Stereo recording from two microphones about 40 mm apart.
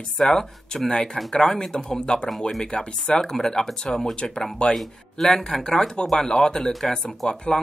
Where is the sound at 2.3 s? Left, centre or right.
Centre.